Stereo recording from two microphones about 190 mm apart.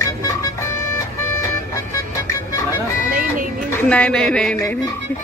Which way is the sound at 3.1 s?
45° right (ahead or behind).